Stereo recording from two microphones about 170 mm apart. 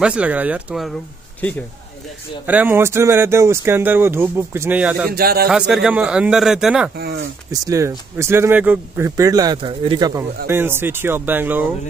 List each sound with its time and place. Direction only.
0.0 s speech: 5° right (ahead or behind)
1.4 s speech: 10° left (ahead or behind)
2.4 s speech: 10° right (ahead or behind)
5.1 s speech: 65° right (ahead or behind)
5.5 s speech: 5° right (ahead or behind)
7.6 s speech: 15° right (ahead or behind)
10.5 s speech: 15° right (ahead or behind)